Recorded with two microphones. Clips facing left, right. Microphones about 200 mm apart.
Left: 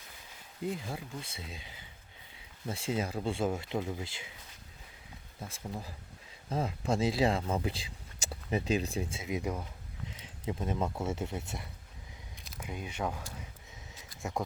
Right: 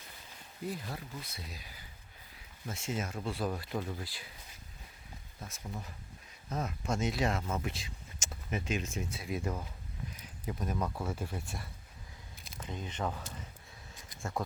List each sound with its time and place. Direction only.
0.8 s speech: 10° left (ahead or behind)
1.2 s speech: 25° left (ahead or behind)
5.4 s speech: 30° left (ahead or behind); by 9.6 s 15° left (ahead or behind)
10.1 s speech: 25° left (ahead or behind)
12.4 s speech: 5° left (ahead or behind)